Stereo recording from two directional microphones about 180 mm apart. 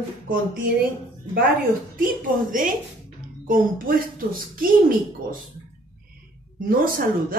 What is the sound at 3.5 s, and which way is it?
Speech, 50° right (ahead or behind).